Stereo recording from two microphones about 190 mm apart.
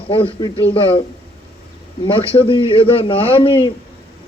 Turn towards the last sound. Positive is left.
turn(degrees=30)  # may be behind; listen again after turning